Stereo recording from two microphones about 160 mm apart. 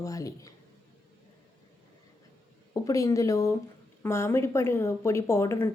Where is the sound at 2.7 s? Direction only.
20° left (ahead or behind).